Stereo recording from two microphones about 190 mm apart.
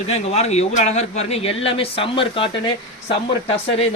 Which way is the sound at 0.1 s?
35° left (ahead or behind).